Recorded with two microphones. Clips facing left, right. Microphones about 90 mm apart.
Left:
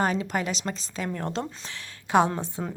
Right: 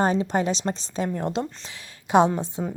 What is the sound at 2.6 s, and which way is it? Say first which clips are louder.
Speech: right 3 dB; centre (ahead or behind).